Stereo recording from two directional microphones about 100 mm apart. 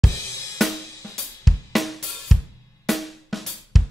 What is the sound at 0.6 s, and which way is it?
Music, centre (ahead or behind).